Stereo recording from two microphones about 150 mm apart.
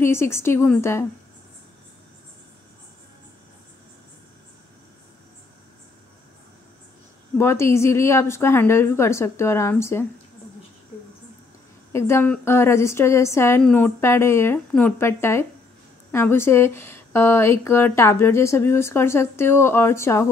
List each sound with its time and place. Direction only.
0.0 s speech: 15° left (ahead or behind)
7.3 s speech: 15° left (ahead or behind)
11.9 s speech: 20° left (ahead or behind)